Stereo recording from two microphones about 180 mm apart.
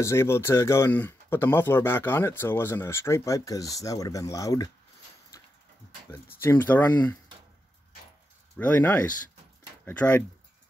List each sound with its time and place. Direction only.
0.0 s speech: 15° left (ahead or behind)
5.3 s a sound: 15° left (ahead or behind)
6.4 s speech: 10° left (ahead or behind)
8.5 s speech: 10° left (ahead or behind)